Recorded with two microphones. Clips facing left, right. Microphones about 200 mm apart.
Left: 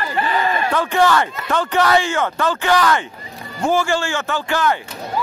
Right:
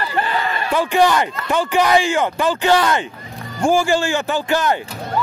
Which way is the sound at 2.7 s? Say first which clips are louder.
Right 1 dB; 25° right (ahead or behind).